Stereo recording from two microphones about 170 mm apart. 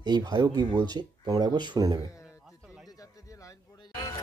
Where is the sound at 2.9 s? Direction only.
20° left (ahead or behind).